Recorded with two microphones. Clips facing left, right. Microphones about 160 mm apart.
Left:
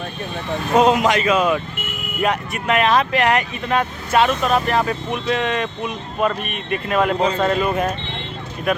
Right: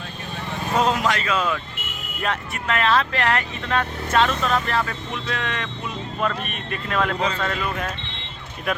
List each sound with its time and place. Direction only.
0.8 s speech: 20° left (ahead or behind)
7.3 s speech: 25° left (ahead or behind)